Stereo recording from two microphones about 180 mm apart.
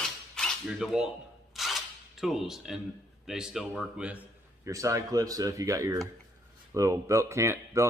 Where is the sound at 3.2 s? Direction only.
5° right (ahead or behind).